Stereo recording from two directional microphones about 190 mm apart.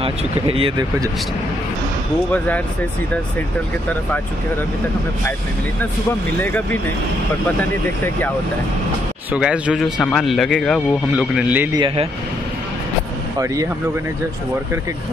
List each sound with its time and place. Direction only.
0.0 s speech: 30° right (ahead or behind)
2.3 s speech: 10° left (ahead or behind)
6.4 s speech: 10° left (ahead or behind)
9.3 s speech: 5° right (ahead or behind)
11.8 s speech: 30° right (ahead or behind)